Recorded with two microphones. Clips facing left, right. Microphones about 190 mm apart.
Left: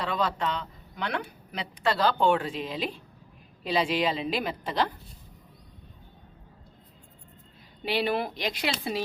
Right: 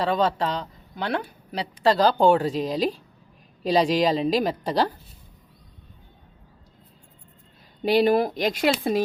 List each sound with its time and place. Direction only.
0.0 s a woman's voice: 35° right (ahead or behind)
7.9 s speech: 40° right (ahead or behind)